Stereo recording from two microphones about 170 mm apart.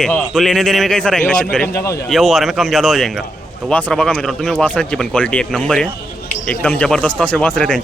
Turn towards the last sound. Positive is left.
turn(degrees=5)  # may be behind; listen again after turning